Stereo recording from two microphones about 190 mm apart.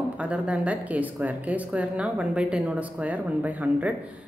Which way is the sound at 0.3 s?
5° right (ahead or behind).